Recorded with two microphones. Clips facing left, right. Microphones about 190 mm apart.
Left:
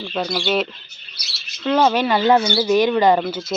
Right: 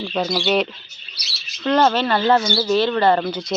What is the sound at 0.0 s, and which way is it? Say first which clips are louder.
Speech: right 2 dB; centre (ahead or behind).